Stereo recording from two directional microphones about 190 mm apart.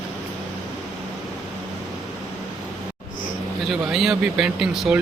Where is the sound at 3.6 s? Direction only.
Centre (ahead or behind).